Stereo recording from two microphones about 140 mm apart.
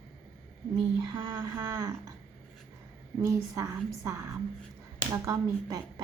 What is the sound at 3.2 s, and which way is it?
A woman's voice, 20° right (ahead or behind).